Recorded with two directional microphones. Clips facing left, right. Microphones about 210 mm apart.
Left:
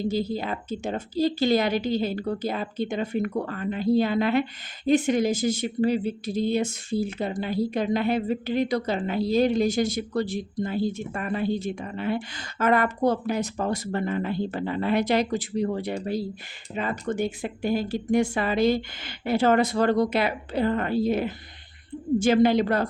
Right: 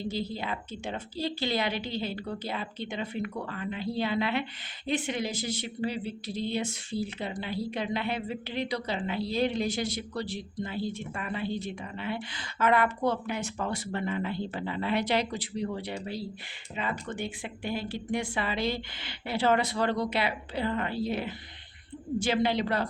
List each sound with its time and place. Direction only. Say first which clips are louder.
0.1 s speech: left 6 dB; 45° left (ahead or behind)